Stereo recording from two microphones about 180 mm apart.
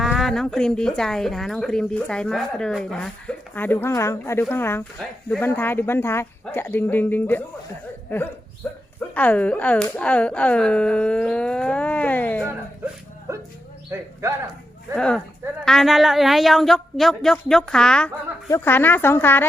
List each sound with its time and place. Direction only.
0.0 s a woman's voice: centre (ahead or behind)
8.6 s speech: 5° left (ahead or behind)
12.5 s a sound: 15° right (ahead or behind)
13.9 s speech: 15° right (ahead or behind)
14.9 s a woman's voice: 5° left (ahead or behind)
18.4 s speech: 15° left (ahead or behind)